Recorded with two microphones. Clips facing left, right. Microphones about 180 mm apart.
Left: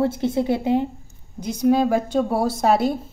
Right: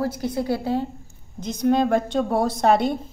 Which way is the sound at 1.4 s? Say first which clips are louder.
Left 2 dB; 10° left (ahead or behind).